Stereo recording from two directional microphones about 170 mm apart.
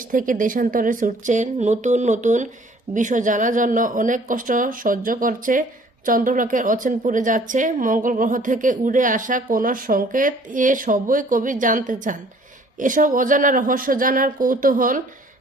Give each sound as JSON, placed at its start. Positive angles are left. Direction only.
{"t": 0.1, "sound": "a woman's voice", "side_deg": -50}